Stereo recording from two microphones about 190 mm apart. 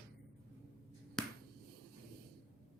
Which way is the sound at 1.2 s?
5° left (ahead or behind).